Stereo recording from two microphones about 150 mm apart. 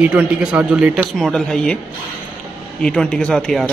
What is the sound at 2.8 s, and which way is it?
Speech, 5° left (ahead or behind).